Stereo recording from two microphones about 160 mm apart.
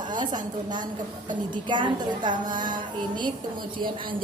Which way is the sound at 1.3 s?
30° right (ahead or behind).